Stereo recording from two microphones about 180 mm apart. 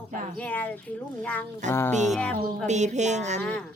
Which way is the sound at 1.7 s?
10° left (ahead or behind).